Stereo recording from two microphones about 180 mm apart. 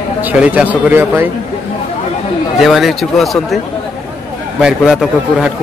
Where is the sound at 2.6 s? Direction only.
Centre (ahead or behind).